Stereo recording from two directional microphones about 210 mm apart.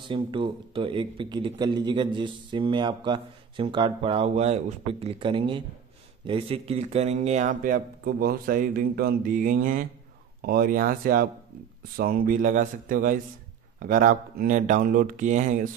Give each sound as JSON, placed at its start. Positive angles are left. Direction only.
{"t": 0.1, "sound": "a man's voice", "side_deg": -25}